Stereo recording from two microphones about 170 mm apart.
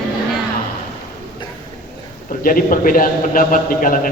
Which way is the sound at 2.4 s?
55° left (ahead or behind).